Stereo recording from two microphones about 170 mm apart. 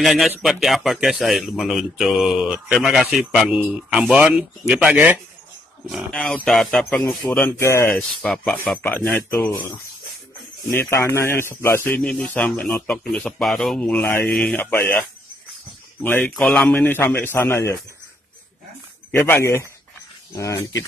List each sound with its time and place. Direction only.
0.0 s speech: centre (ahead or behind)
10.9 s speech: 15° left (ahead or behind)
16.0 s speech: 10° left (ahead or behind)
19.1 s speech: 15° left (ahead or behind)